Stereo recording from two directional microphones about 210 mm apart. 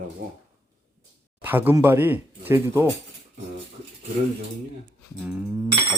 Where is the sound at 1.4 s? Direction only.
10° right (ahead or behind).